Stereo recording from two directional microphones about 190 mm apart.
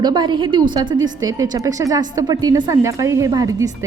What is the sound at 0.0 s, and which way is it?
A woman's voice, 20° right (ahead or behind).